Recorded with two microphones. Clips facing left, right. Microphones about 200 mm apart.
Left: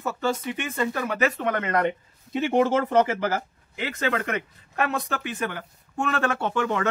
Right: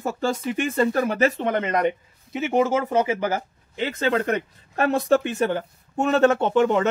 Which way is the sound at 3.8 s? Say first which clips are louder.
Right 4 dB; 30° right (ahead or behind).